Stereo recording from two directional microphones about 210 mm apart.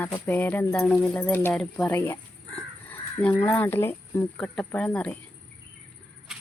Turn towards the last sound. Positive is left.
turn(degrees=0)  # may be behind; listen again after turning